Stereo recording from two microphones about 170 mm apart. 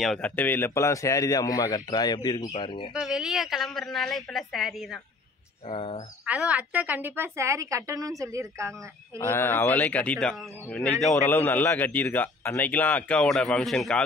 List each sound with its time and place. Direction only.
0.0 s a woman's voice: centre (ahead or behind)
0.4 s a man's voice: 10° left (ahead or behind); by 2.9 s 30° left (ahead or behind)
2.9 s a woman's voice: 5° right (ahead or behind)
5.7 s speech: 35° left (ahead or behind)
6.2 s a woman's voice: 5° right (ahead or behind)
9.2 s a man's voice: 15° left (ahead or behind)